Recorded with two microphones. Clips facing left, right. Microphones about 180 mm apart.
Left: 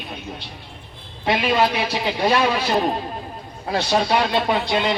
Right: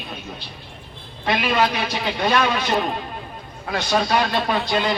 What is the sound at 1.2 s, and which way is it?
A man's voice, 25° left (ahead or behind).